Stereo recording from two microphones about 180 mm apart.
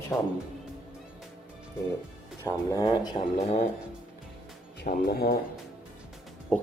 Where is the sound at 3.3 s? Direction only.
40° left (ahead or behind).